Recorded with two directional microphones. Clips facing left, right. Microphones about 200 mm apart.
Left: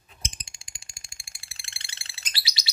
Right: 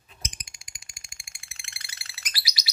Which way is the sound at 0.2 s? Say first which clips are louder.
Left 1 dB; 30° left (ahead or behind).